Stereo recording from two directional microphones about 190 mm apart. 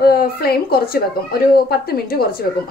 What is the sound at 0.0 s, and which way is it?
A woman's voice, 55° left (ahead or behind).